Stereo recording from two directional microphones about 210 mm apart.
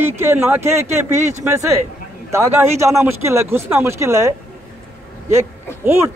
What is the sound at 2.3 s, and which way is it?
Speech, 10° right (ahead or behind).